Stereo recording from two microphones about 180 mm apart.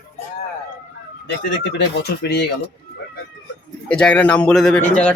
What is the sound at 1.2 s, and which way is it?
Speech, 75° left (ahead or behind).